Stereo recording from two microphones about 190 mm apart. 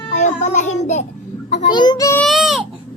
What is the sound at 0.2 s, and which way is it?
A child's voice, 40° left (ahead or behind).